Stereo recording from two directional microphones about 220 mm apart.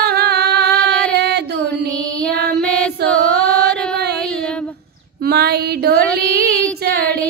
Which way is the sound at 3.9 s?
45° right (ahead or behind).